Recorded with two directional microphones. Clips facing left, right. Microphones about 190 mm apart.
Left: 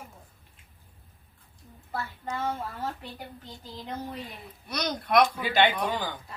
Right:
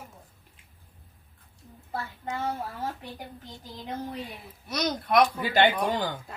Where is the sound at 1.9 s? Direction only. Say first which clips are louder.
Even; 20° right (ahead or behind).